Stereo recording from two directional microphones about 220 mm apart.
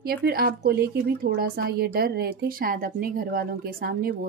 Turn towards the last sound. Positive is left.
turn(degrees=-40)  # may be behind; listen again after turning